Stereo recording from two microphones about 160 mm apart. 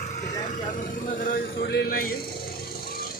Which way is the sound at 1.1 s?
60° left (ahead or behind).